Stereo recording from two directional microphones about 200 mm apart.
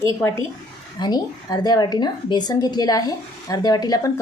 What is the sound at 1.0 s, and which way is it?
A woman's voice, 20° left (ahead or behind).